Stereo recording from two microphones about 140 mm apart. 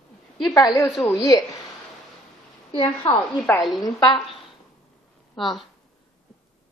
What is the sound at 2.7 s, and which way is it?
A woman's voice, 40° left (ahead or behind).